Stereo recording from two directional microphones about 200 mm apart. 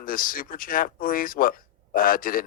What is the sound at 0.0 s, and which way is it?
Speech, 45° left (ahead or behind).